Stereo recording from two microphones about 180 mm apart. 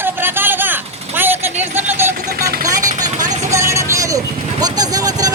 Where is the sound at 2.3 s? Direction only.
55° right (ahead or behind).